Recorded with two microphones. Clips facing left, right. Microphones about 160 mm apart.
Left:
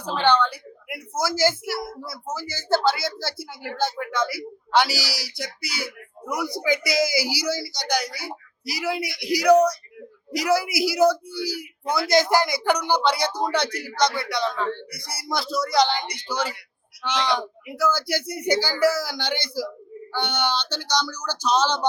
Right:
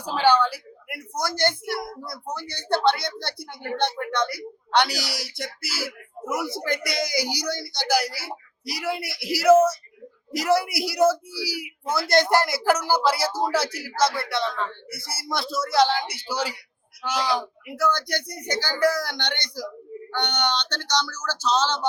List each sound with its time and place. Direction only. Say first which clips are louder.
0.0 s a sound: right 1 dB; 10° right (ahead or behind)
1.9 s a man's voice: left 1 dB; 5° left (ahead or behind)
17.7 s speech: left 1 dB; 5° left (ahead or behind)